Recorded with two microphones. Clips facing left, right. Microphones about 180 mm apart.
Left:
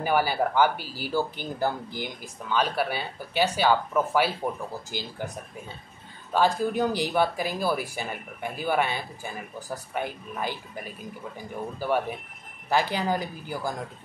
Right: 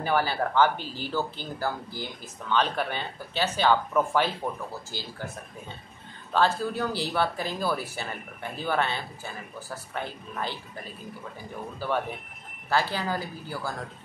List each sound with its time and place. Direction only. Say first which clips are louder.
0.0 s speech: left 2 dB; 10° left (ahead or behind)
4.9 s speech: left 4 dB; 15° left (ahead or behind)
6.3 s speech: left 2 dB; 15° left (ahead or behind)